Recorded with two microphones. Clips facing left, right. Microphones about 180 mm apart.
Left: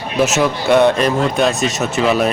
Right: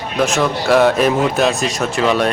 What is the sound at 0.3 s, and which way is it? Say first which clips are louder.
Speech: right 1 dB; centre (ahead or behind).